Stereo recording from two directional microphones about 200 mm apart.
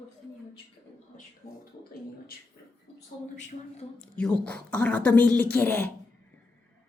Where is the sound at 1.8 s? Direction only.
50° left (ahead or behind).